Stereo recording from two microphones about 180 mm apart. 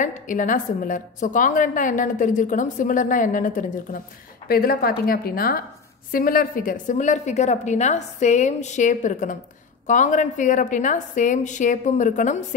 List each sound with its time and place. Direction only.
0.0 s a woman's voice: 45° left (ahead or behind)